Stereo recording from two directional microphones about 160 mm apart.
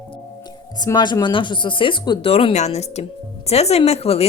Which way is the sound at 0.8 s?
25° left (ahead or behind).